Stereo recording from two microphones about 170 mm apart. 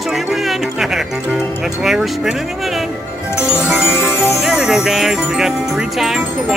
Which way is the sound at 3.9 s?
15° left (ahead or behind).